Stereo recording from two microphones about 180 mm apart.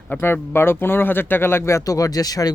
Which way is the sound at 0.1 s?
10° left (ahead or behind).